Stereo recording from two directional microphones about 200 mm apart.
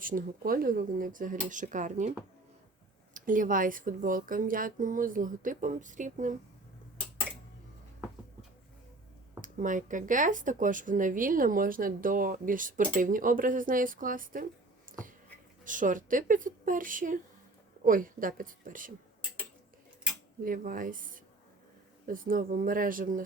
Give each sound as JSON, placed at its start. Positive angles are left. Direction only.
{"t": 0.0, "sound": "speech", "side_deg": -45}
{"t": 3.2, "sound": "speech", "side_deg": -40}
{"t": 9.4, "sound": "speech", "side_deg": -40}
{"t": 14.8, "sound": "a sound", "side_deg": -40}
{"t": 15.6, "sound": "speech", "side_deg": -40}
{"t": 20.4, "sound": "speech", "side_deg": -45}